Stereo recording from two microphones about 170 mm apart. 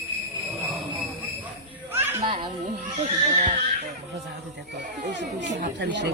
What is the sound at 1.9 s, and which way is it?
Children playing, 15° right (ahead or behind).